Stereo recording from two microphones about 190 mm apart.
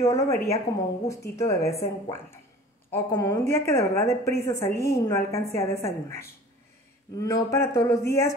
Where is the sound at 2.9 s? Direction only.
15° left (ahead or behind).